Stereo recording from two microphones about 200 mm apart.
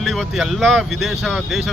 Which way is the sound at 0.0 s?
Centre (ahead or behind).